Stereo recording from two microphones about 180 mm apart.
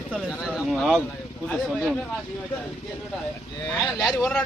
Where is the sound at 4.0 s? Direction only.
20° left (ahead or behind).